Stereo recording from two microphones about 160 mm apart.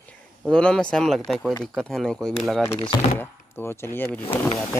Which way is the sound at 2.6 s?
15° left (ahead or behind).